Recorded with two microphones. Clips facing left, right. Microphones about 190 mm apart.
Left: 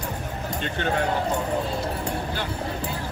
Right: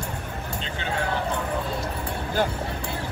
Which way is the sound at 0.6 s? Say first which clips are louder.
Left 5 dB; 55° left (ahead or behind).